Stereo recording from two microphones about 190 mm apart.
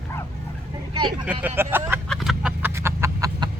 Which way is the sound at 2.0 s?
Centre (ahead or behind).